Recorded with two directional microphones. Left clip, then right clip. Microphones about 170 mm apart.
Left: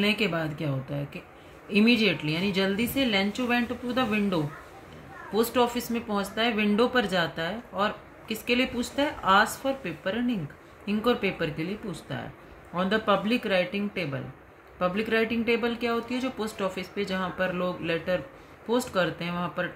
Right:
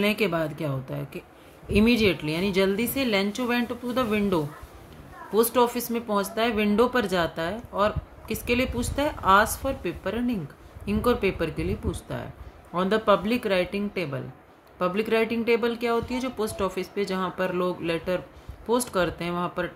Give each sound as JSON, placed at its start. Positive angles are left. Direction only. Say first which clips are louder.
{"t": 0.0, "sound": "a woman's voice", "louder": "right 2 dB", "side_deg": -60}